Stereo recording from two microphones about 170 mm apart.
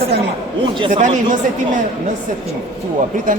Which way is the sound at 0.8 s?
40° right (ahead or behind).